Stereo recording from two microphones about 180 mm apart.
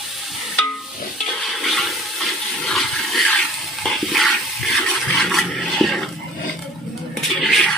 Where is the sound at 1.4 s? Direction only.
Centre (ahead or behind).